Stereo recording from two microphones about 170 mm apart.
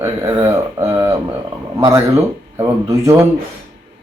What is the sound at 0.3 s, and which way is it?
Speech, 15° right (ahead or behind).